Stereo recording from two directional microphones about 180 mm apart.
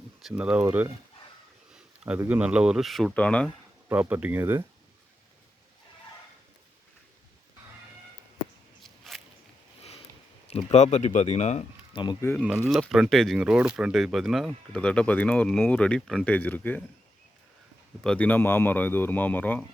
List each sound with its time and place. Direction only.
0.2 s speech: 5° right (ahead or behind)
3.8 s speech: 10° right (ahead or behind)
8.8 s a sound: centre (ahead or behind)
10.5 s speech: 35° left (ahead or behind)
11.9 s speech: 30° left (ahead or behind)
12.6 s speech: centre (ahead or behind)
18.0 s speech: 5° left (ahead or behind)